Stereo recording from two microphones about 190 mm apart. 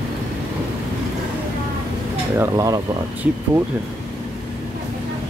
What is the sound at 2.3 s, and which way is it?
Speech, 15° right (ahead or behind).